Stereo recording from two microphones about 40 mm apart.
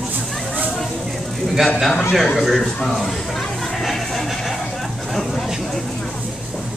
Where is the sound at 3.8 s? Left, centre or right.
Centre.